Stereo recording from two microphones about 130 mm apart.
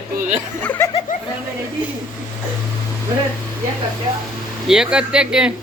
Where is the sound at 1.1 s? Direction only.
90° left.